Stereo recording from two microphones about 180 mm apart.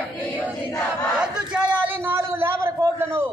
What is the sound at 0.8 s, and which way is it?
Battle cry, 5° right (ahead or behind).